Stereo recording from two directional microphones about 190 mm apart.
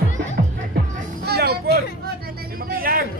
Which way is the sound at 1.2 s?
55° right (ahead or behind).